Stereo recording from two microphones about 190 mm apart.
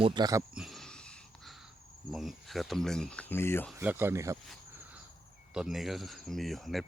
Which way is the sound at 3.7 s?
10° right (ahead or behind).